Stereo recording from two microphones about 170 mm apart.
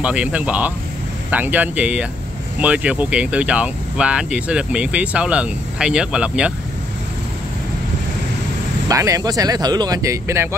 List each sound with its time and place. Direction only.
0.0 s speech: 5° right (ahead or behind)
8.8 s speech: 20° right (ahead or behind)